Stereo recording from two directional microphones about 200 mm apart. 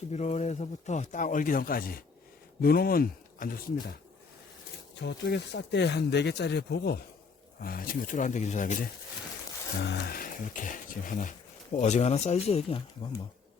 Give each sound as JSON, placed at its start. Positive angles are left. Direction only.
{"t": 0.1, "sound": "speech", "side_deg": 35}
{"t": 4.9, "sound": "speech", "side_deg": 60}
{"t": 7.6, "sound": "speech", "side_deg": 45}
{"t": 9.8, "sound": "speech", "side_deg": 55}